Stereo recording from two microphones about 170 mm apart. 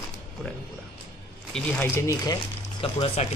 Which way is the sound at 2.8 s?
35° left (ahead or behind).